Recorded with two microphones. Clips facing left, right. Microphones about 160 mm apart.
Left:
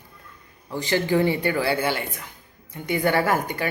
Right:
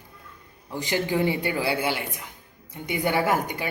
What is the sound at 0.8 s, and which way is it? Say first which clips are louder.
A woman's voice: left 3 dB; 15° right (ahead or behind).